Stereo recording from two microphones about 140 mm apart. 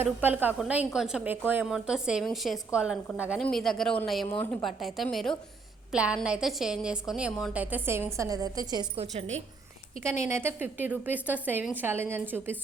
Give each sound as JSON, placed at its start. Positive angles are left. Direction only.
{"t": 0.0, "sound": "a woman's voice", "side_deg": -15}
{"t": 3.4, "sound": "a woman's voice", "side_deg": 5}
{"t": 9.0, "sound": "a woman's voice", "side_deg": -50}
{"t": 10.0, "sound": "a woman's voice", "side_deg": -20}